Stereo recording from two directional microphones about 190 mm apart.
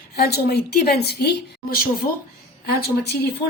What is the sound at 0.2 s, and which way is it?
A woman's voice, 55° left (ahead or behind).